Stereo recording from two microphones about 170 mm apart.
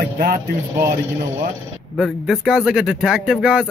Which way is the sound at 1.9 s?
Centre (ahead or behind).